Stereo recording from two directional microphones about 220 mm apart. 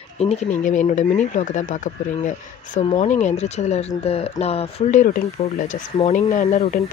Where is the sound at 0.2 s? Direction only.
30° left (ahead or behind).